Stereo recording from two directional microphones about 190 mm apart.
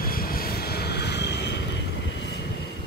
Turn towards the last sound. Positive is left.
turn(degrees=65)  # may be behind; listen again after turning